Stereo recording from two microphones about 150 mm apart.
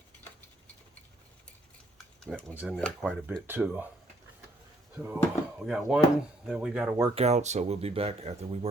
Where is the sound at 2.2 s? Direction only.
Centre (ahead or behind).